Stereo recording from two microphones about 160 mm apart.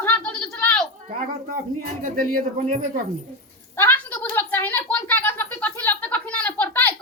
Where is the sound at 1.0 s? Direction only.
55° right (ahead or behind).